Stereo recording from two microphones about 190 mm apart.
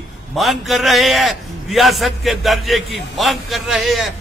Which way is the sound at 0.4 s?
Centre (ahead or behind).